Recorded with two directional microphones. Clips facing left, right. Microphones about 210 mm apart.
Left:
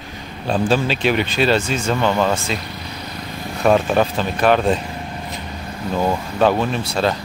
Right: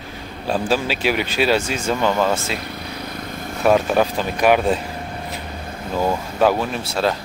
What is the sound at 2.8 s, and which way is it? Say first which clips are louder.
Vehicle: right 1 dB; 55° right (ahead or behind).